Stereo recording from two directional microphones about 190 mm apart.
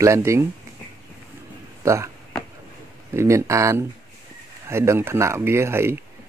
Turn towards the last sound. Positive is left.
turn(degrees=-15)  # may be behind; listen again after turning